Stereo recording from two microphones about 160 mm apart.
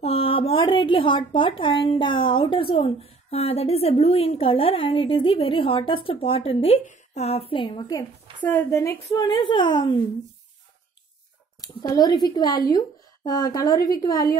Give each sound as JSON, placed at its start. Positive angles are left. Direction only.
{"t": 0.0, "sound": "a woman's voice", "side_deg": 35}
{"t": 8.4, "sound": "a woman's voice", "side_deg": 10}
{"t": 11.6, "sound": "a woman's voice", "side_deg": 25}